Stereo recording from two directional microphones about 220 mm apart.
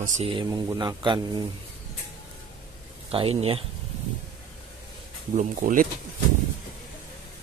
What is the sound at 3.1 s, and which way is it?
Speech, 25° right (ahead or behind).